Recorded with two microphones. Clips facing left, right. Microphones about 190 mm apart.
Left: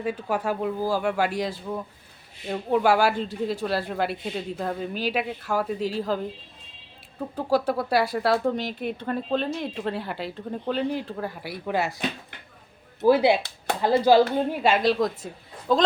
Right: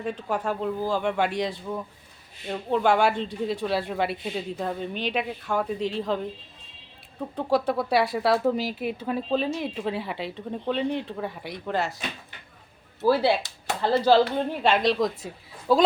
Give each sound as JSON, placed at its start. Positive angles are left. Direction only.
{"t": 0.0, "sound": "speech", "side_deg": 5}
{"t": 13.0, "sound": "speech", "side_deg": 15}